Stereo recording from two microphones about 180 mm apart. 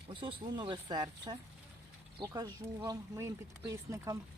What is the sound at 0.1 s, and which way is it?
Speech, 25° right (ahead or behind).